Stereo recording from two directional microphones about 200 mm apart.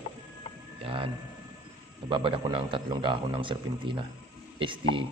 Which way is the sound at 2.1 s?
25° right (ahead or behind).